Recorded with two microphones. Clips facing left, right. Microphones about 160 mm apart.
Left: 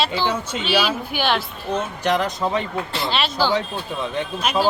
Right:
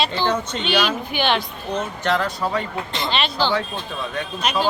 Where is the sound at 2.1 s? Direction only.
15° left (ahead or behind).